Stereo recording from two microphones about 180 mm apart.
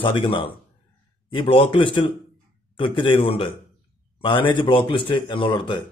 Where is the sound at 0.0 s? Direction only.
25° left (ahead or behind).